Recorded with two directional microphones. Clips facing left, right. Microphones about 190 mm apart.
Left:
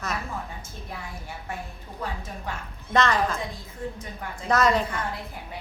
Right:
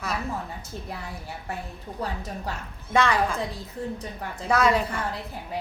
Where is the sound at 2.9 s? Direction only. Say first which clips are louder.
Even; 10° right (ahead or behind).